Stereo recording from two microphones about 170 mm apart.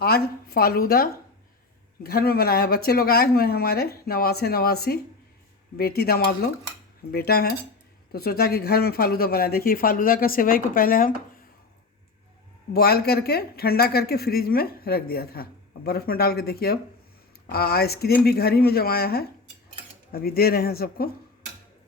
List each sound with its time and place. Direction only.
0.0 s speech: 65° left (ahead or behind)
12.7 s speech: 65° left (ahead or behind)